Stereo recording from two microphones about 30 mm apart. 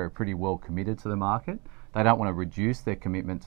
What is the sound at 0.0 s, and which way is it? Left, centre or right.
Speech, centre.